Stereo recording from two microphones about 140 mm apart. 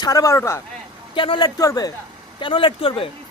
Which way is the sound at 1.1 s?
35° left (ahead or behind).